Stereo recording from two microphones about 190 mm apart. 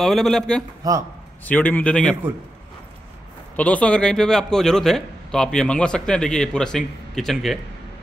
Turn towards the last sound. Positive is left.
turn(degrees=0)  # may be behind; listen again after turning